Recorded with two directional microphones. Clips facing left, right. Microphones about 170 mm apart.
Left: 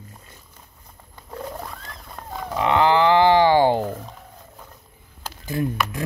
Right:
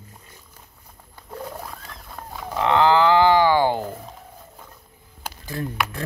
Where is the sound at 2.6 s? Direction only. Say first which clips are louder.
Even; 15° left (ahead or behind).